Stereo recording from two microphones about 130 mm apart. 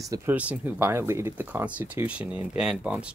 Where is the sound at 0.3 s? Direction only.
10° right (ahead or behind).